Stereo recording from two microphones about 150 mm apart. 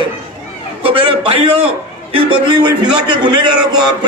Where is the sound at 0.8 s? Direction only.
40° right (ahead or behind).